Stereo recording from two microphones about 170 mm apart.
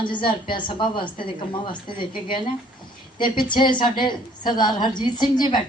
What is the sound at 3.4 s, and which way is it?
A woman's voice, 25° left (ahead or behind).